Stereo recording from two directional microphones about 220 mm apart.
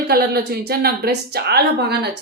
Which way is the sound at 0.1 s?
45° right (ahead or behind).